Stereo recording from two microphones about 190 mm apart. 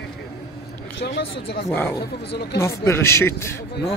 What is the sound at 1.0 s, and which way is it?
Speech, 60° left (ahead or behind).